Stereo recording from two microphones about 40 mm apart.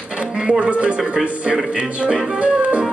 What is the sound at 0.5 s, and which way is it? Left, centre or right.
Music, right.